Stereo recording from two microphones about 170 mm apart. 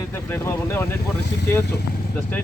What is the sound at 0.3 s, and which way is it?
Speech, 15° left (ahead or behind).